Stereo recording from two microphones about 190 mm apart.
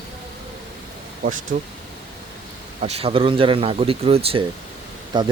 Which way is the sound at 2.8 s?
30° right (ahead or behind).